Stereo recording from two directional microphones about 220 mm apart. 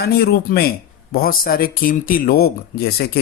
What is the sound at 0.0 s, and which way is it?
Speech, 45° left (ahead or behind).